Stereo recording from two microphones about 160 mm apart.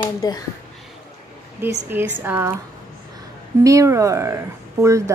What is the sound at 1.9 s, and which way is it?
Speech, 15° right (ahead or behind).